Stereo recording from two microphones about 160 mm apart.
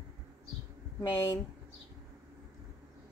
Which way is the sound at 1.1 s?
15° left (ahead or behind).